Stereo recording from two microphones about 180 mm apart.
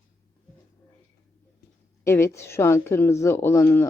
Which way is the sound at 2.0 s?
15° left (ahead or behind).